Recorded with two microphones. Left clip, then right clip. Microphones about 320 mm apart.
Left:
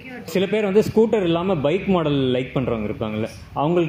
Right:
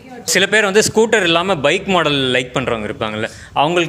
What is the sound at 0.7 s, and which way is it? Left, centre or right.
Speech, right.